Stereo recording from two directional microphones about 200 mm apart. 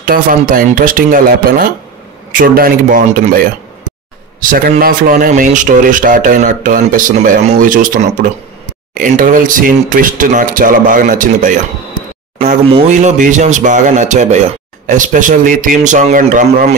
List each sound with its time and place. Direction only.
0.0 s a man's voice: 45° right (ahead or behind)
12.9 s a man's voice: 40° right (ahead or behind)